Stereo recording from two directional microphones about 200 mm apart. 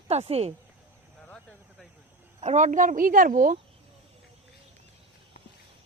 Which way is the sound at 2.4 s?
35° right (ahead or behind).